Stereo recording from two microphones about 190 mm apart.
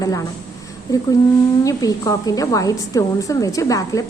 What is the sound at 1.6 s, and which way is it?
A woman's voice, 20° left (ahead or behind).